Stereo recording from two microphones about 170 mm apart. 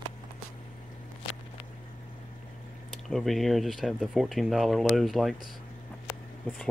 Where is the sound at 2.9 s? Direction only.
Centre (ahead or behind).